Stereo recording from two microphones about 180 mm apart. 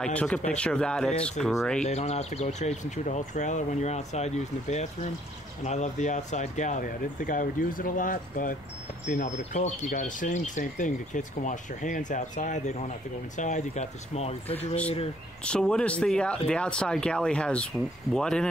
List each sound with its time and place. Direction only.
0.0 s speech: 5° left (ahead or behind)
1.9 s speech: 35° left (ahead or behind)
15.4 s speech: 5° left (ahead or behind)